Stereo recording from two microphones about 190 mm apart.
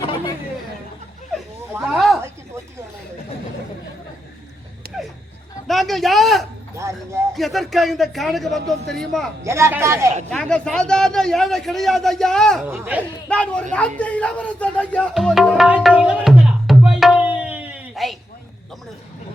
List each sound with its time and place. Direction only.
0.0 s chatter: 25° left (ahead or behind)
1.9 s a sound: centre (ahead or behind)
5.6 s a sound: centre (ahead or behind)
6.7 s a sound: 15° right (ahead or behind)
7.3 s a man's voice: centre (ahead or behind)
9.4 s speech: 15° right (ahead or behind)
10.2 s a man's voice: 5° left (ahead or behind)
12.6 s speech: 10° right (ahead or behind)
13.2 s a man's voice: 5° left (ahead or behind)
13.7 s music: 5° left (ahead or behind)